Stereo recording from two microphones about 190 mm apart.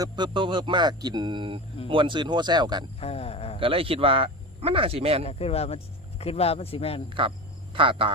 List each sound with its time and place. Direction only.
0.0 s speech: 25° right (ahead or behind)
3.0 s speech: 30° left (ahead or behind)
3.6 s speech: 30° right (ahead or behind)
5.2 s speech: 35° left (ahead or behind)
7.1 s speech: 25° right (ahead or behind)